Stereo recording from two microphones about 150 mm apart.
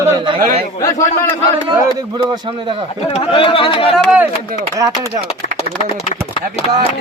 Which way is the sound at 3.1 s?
40° left (ahead or behind).